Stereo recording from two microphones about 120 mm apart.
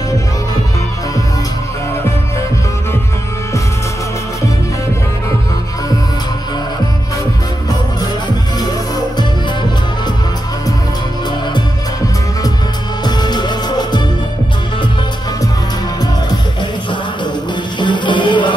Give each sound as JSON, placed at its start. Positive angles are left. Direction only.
{"t": 13.0, "sound": "music", "side_deg": 35}
{"t": 17.7, "sound": "music", "side_deg": 40}